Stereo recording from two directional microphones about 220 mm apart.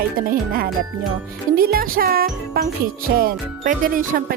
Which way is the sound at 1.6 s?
40° right (ahead or behind).